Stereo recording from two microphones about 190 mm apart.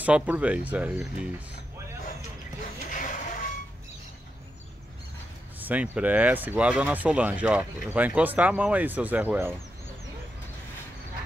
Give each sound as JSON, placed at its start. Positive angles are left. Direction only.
{"t": 0.0, "sound": "speech", "side_deg": -5}
{"t": 2.9, "sound": "vehicle", "side_deg": 45}
{"t": 5.6, "sound": "speech", "side_deg": -10}